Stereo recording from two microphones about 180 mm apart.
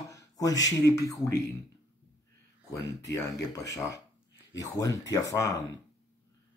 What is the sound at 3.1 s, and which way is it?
A man's voice, 15° left (ahead or behind).